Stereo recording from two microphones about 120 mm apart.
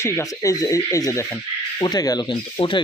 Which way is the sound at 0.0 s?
25° left (ahead or behind).